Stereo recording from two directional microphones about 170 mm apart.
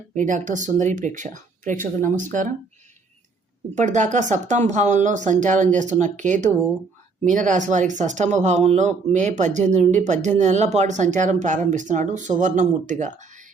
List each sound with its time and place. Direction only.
0.1 s speech: 50° right (ahead or behind)
3.8 s speech: 45° right (ahead or behind)